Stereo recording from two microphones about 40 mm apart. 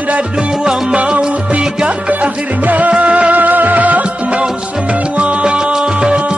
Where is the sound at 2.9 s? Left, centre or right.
Right.